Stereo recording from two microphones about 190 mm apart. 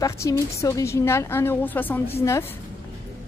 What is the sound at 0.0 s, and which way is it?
A woman's voice, 15° left (ahead or behind).